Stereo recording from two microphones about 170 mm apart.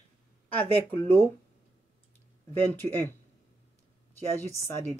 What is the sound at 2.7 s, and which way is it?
Speech, 10° left (ahead or behind).